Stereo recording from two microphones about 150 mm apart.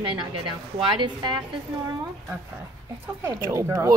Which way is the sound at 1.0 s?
30° right (ahead or behind).